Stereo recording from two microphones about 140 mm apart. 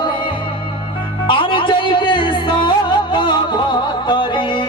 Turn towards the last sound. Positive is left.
turn(degrees=35)  # may be behind; listen again after turning